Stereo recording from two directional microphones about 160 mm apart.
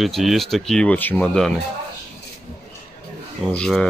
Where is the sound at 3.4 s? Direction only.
5° left (ahead or behind).